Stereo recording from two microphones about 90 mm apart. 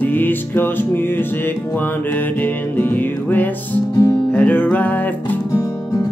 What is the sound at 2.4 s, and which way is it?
Music, 20° left (ahead or behind).